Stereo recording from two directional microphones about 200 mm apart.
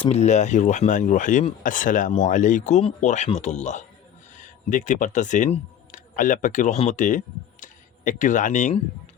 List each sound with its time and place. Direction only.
0.0 s speech: 35° left (ahead or behind)